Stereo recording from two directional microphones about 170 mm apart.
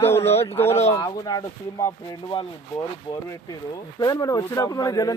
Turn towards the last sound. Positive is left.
turn(degrees=20)  # may be behind; listen again after turning